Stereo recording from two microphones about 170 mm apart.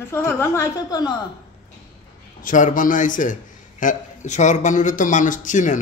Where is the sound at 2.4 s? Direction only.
50° left (ahead or behind).